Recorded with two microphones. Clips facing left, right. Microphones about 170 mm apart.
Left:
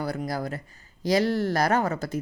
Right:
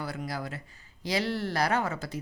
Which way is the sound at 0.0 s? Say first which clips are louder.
Left 6 dB; 40° left (ahead or behind).